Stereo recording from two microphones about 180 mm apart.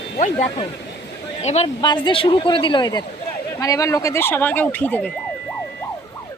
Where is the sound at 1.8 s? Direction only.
25° left (ahead or behind); by 5.1 s 10° left (ahead or behind).